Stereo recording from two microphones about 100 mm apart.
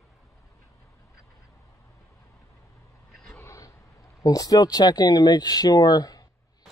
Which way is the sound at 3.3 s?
30° left (ahead or behind).